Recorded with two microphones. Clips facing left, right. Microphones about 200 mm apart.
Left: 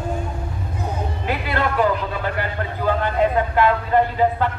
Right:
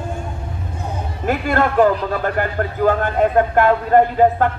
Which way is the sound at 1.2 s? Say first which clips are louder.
Right 6 dB; 45° right (ahead or behind).